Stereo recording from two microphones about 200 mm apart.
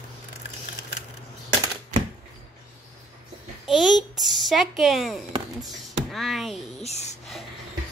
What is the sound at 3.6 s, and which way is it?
A child's voice, centre (ahead or behind).